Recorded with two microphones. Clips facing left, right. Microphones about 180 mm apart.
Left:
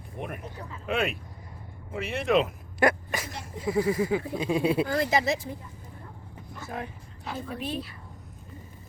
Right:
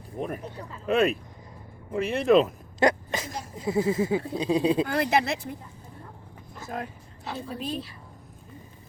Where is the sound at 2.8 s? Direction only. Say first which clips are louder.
Right 1 dB; 20° right (ahead or behind).